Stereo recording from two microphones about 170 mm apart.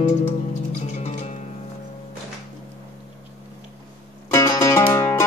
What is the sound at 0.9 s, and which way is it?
Music, 40° left (ahead or behind).